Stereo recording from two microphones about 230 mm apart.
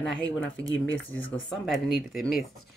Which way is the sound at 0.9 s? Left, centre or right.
Left.